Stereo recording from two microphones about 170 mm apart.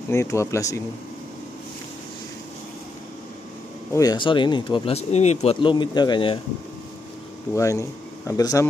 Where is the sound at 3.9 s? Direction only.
25° left (ahead or behind).